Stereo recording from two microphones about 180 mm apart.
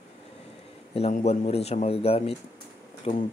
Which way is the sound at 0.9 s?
35° left (ahead or behind).